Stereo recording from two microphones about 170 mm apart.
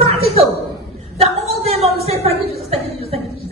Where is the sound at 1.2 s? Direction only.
35° right (ahead or behind).